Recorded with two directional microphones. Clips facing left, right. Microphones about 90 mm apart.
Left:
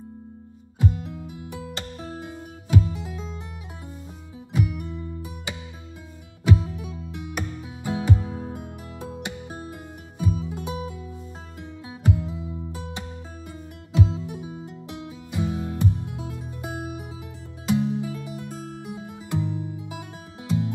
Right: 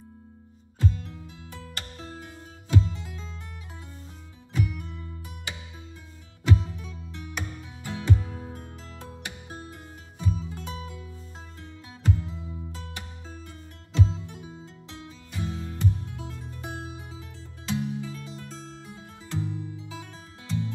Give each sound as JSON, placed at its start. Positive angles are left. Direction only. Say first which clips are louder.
{"t": 0.7, "sound": "music", "louder": "left 4 dB", "side_deg": 15}
{"t": 4.5, "sound": "music", "louder": "left 4 dB", "side_deg": 20}
{"t": 12.0, "sound": "music", "louder": "left 4 dB", "side_deg": 15}